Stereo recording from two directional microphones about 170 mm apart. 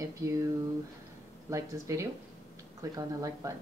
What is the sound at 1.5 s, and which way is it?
A woman's voice, 15° right (ahead or behind).